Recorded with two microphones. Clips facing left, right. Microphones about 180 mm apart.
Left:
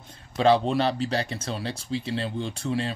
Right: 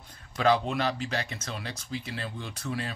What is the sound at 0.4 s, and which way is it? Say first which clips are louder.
Speech: left 5 dB; 30° left (ahead or behind).